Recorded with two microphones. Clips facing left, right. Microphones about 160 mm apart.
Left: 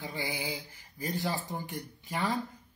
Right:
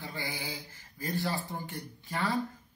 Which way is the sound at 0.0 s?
15° left (ahead or behind).